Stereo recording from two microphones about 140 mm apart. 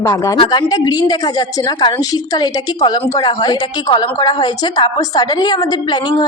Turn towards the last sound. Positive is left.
turn(degrees=30)  # may be behind; listen again after turning